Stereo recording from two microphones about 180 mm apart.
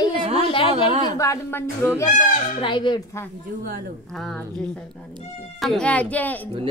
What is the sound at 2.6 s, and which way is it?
Speech, 25° left (ahead or behind).